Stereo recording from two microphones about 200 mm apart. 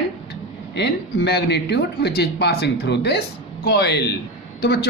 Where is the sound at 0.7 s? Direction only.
55° left (ahead or behind).